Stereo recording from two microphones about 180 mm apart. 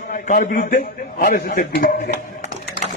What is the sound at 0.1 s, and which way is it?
A man's voice, 50° left (ahead or behind).